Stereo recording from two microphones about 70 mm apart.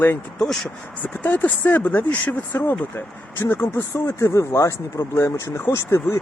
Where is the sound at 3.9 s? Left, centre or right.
Left.